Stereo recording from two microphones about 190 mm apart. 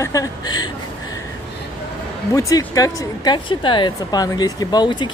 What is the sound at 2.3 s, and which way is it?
A woman's voice, 20° left (ahead or behind).